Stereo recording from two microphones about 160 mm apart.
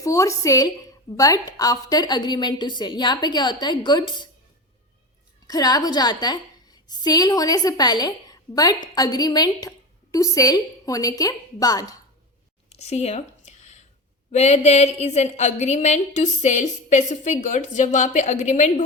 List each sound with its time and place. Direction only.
0.0 s a woman's voice: 20° left (ahead or behind)
5.5 s a woman's voice: 25° left (ahead or behind)
12.7 s a sound: 40° left (ahead or behind)
14.3 s a woman's voice: 45° left (ahead or behind)